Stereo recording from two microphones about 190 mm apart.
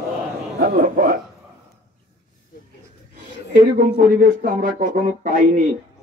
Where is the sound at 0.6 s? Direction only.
45° right (ahead or behind).